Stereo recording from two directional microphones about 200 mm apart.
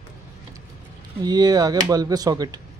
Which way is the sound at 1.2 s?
20° right (ahead or behind).